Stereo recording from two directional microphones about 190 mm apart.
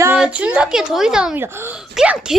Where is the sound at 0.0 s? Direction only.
10° right (ahead or behind).